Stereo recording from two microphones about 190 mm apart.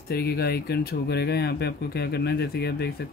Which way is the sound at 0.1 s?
55° left (ahead or behind).